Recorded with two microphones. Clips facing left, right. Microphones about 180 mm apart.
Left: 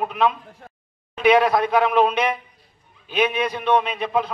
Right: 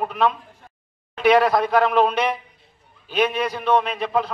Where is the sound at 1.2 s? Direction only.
10° left (ahead or behind).